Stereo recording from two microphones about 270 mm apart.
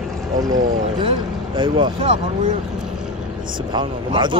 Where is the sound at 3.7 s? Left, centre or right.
Centre.